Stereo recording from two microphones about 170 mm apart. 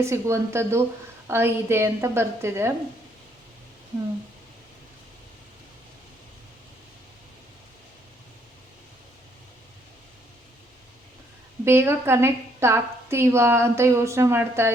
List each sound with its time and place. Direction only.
0.0 s a woman's voice: 15° right (ahead or behind)
11.6 s a woman's voice: 15° right (ahead or behind)